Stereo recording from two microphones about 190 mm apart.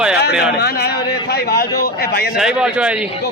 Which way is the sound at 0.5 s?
60° left (ahead or behind).